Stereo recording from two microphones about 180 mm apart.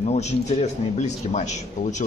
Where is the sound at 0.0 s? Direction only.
40° left (ahead or behind).